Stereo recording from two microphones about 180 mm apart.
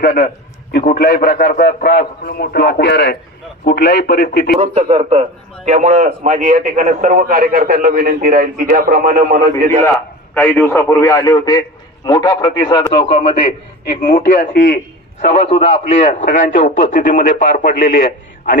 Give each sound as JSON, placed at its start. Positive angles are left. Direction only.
{"t": 0.0, "sound": "a man's voice", "side_deg": 50}
{"t": 4.6, "sound": "a man's voice", "side_deg": -30}
{"t": 9.7, "sound": "a man's voice", "side_deg": 10}
{"t": 14.1, "sound": "a man's voice", "side_deg": 55}
{"t": 15.2, "sound": "speech", "side_deg": 35}